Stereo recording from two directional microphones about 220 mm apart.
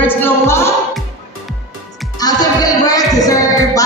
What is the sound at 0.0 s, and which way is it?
Music, 10° left (ahead or behind).